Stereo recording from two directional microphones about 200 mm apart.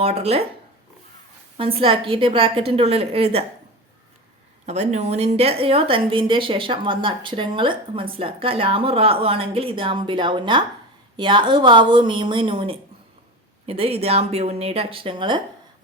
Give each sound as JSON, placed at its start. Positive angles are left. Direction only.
{"t": 0.0, "sound": "speech", "side_deg": -30}
{"t": 1.5, "sound": "a woman's voice", "side_deg": -25}
{"t": 4.6, "sound": "a woman's voice", "side_deg": -35}